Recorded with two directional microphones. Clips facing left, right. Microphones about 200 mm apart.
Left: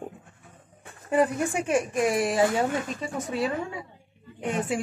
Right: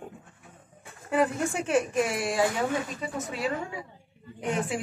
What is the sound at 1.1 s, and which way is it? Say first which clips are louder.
Speech: left 2 dB; 20° left (ahead or behind).